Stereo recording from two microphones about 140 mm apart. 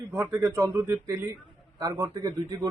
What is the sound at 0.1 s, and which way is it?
A man's voice, 20° right (ahead or behind).